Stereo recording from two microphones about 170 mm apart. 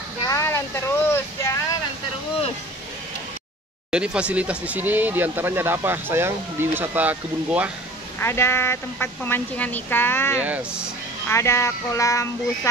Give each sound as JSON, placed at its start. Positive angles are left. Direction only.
{"t": 0.2, "sound": "vehicle", "side_deg": 20}
{"t": 3.9, "sound": "speech", "side_deg": -5}
{"t": 8.2, "sound": "a woman's voice", "side_deg": 15}